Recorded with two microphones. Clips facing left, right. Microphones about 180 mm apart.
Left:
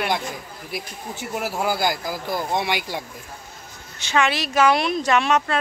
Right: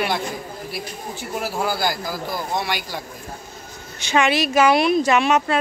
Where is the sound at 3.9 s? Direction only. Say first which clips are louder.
Right 3 dB; 15° right (ahead or behind).